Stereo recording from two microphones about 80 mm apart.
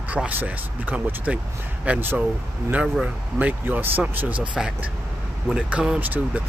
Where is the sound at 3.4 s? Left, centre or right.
Right.